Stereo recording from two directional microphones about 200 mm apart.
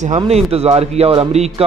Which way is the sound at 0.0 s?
35° right (ahead or behind).